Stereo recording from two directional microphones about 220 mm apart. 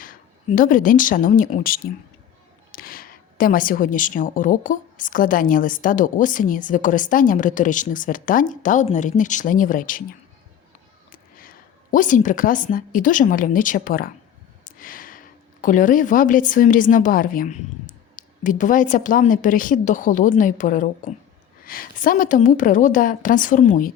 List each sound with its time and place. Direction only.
0.0 s a woman's voice: 40° left (ahead or behind)
11.1 s a woman's voice: 40° left (ahead or behind)
14.6 s a sound: 40° left (ahead or behind)
15.6 s a woman's voice: 35° left (ahead or behind)